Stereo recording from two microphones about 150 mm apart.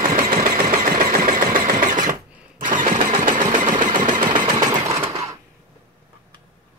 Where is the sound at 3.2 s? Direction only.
60° right (ahead or behind).